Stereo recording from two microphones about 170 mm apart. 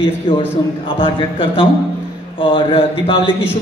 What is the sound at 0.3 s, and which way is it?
A man's voice, 30° left (ahead or behind).